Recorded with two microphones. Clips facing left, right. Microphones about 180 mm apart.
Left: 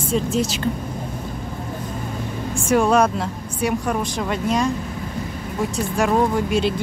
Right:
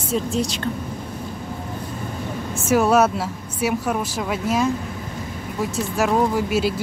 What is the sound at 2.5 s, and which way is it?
Speech, 5° right (ahead or behind).